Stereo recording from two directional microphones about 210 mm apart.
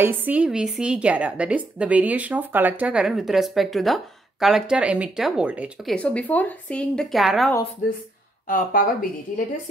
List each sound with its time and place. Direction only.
0.0 s a woman's voice: 10° right (ahead or behind)
5.9 s a woman's voice: 5° left (ahead or behind)
8.5 s speech: 40° left (ahead or behind)